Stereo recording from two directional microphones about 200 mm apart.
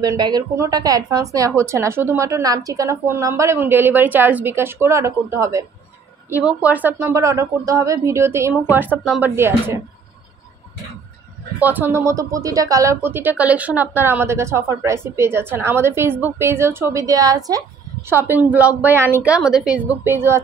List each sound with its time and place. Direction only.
0.0 s speech: 20° right (ahead or behind)
11.6 s speech: 10° right (ahead or behind)